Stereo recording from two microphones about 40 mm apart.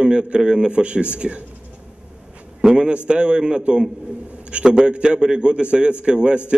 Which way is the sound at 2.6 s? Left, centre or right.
Centre.